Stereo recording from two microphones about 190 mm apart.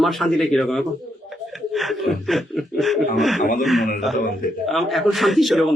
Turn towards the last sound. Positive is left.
turn(degrees=0)  # may be behind; listen again after turning